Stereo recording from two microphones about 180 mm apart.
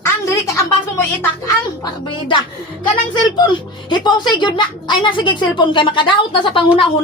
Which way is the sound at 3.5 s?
25° left (ahead or behind).